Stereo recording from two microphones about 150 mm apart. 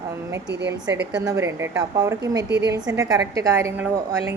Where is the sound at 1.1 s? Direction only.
20° right (ahead or behind).